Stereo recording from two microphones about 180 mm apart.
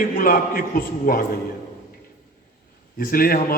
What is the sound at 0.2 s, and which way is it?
A man's voice, 50° left (ahead or behind).